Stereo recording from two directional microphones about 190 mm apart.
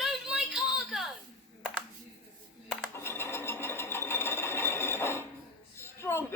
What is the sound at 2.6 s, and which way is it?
Mechanisms, 10° left (ahead or behind).